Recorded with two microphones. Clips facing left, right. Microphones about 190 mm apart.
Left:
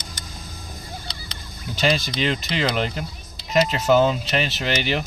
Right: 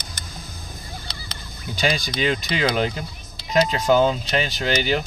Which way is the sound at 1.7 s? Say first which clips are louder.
Left 1 dB; centre (ahead or behind).